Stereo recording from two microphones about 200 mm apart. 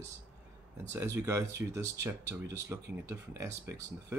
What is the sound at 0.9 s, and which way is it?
Speech, 15° right (ahead or behind).